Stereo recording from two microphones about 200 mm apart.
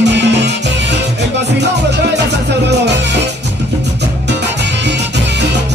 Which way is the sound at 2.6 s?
60° right (ahead or behind).